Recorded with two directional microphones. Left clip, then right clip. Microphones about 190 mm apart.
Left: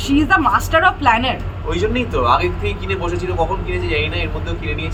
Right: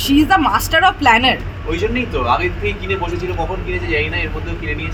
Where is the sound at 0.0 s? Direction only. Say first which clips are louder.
Right 2 dB; 65° right (ahead or behind).